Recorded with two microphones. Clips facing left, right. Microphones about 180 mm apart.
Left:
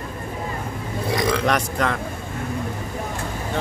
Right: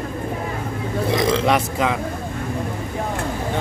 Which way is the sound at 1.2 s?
25° right (ahead or behind).